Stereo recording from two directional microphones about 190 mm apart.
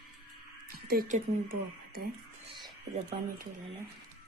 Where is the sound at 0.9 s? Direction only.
45° right (ahead or behind).